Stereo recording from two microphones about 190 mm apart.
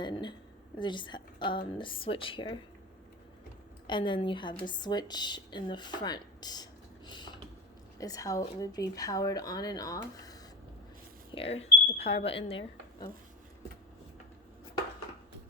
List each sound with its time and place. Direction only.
0.0 s a sound: 25° left (ahead or behind)
0.8 s speech: 25° left (ahead or behind)
3.8 s speech: 25° left (ahead or behind)
7.1 s a sound: 25° left (ahead or behind)
7.9 s speech: 20° left (ahead or behind)
11.3 s speech: 30° left (ahead or behind)